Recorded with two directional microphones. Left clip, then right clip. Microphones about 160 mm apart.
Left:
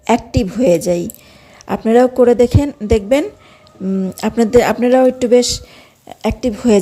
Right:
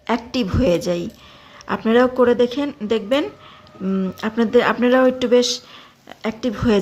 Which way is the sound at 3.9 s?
20° left (ahead or behind).